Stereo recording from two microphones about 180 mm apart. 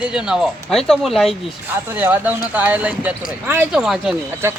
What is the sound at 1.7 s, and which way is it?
Speech, 10° right (ahead or behind).